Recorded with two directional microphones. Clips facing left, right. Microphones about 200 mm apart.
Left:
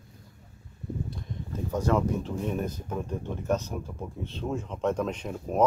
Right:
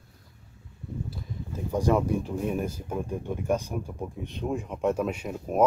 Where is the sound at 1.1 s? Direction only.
10° right (ahead or behind).